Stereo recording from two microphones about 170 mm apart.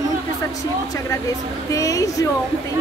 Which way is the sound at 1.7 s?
20° left (ahead or behind).